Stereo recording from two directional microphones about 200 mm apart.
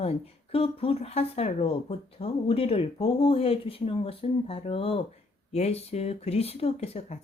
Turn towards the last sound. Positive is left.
turn(degrees=30)  # may be behind; listen again after turning